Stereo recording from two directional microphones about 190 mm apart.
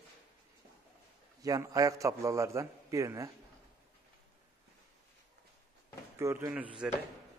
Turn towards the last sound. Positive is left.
turn(degrees=-5)  # may be behind; listen again after turning